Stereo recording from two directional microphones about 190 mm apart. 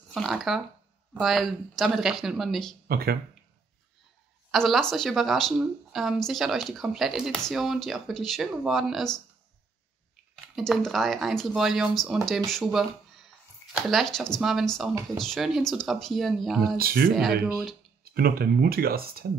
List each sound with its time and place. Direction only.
0.1 s speech: centre (ahead or behind)
2.9 s speech: 55° right (ahead or behind)
4.5 s speech: centre (ahead or behind)
10.3 s speech: centre (ahead or behind)
16.7 s speech: 50° right (ahead or behind)